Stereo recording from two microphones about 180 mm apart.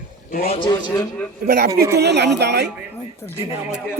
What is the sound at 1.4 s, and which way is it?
A man's voice, 65° right (ahead or behind).